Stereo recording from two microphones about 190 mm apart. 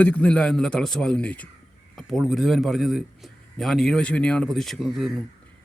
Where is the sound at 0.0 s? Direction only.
5° left (ahead or behind).